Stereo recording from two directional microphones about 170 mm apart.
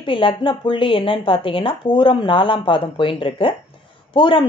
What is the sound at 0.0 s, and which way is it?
A woman's voice, 30° left (ahead or behind).